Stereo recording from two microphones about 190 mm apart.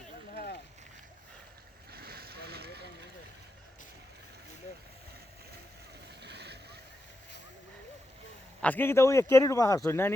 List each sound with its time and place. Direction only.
0.3 s a sound: 60° left (ahead or behind)
1.9 s vehicle: 55° right (ahead or behind)
6.2 s boat: 60° right (ahead or behind)
8.6 s speech: 10° left (ahead or behind)